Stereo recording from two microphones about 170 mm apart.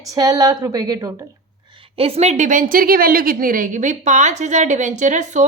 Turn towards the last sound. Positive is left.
turn(degrees=-45)  # may be behind; listen again after turning